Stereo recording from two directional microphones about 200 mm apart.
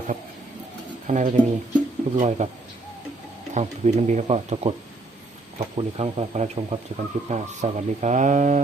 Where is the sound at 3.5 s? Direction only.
35° right (ahead or behind).